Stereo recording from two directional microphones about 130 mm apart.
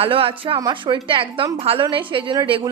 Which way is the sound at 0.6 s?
35° right (ahead or behind).